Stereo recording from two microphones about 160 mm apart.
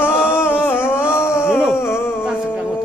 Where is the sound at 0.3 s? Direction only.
15° left (ahead or behind).